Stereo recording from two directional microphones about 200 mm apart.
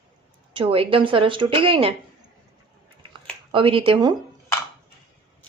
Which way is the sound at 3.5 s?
25° right (ahead or behind).